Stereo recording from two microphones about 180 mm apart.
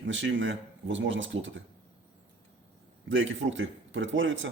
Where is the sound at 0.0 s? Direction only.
90° right.